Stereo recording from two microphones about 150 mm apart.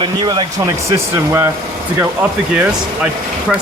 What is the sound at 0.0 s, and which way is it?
Speech, 30° right (ahead or behind).